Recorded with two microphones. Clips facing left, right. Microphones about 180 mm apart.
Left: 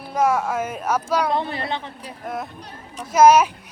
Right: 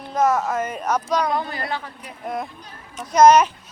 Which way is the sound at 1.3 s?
25° left (ahead or behind).